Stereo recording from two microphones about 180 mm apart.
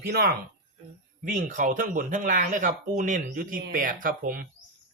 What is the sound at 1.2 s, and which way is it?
A woman's voice, 45° right (ahead or behind).